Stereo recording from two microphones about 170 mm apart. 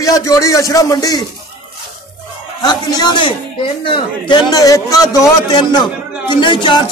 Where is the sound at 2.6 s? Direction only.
25° left (ahead or behind).